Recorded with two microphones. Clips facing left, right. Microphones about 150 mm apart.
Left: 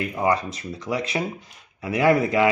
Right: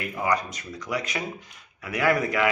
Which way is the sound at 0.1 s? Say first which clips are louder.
Left 2 dB; 30° left (ahead or behind).